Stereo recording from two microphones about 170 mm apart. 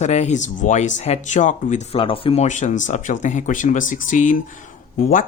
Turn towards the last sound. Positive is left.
turn(degrees=50)  # may be behind; listen again after turning